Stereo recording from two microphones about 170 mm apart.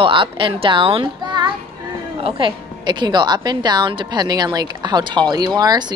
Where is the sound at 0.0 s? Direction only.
30° right (ahead or behind).